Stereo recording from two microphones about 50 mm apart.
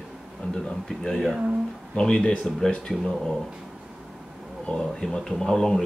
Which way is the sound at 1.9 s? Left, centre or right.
Centre.